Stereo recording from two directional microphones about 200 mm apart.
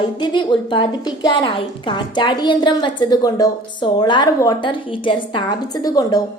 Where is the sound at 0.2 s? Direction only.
25° left (ahead or behind).